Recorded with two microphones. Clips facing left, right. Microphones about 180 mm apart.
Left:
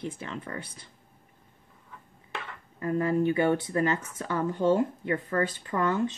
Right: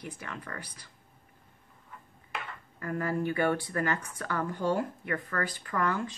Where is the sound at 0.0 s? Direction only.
25° left (ahead or behind).